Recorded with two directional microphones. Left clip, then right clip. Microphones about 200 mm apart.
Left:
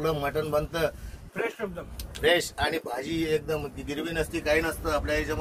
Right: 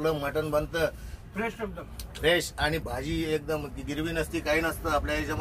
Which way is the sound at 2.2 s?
5° right (ahead or behind).